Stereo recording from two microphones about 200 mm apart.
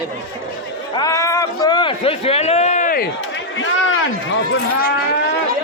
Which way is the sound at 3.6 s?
70° left (ahead or behind).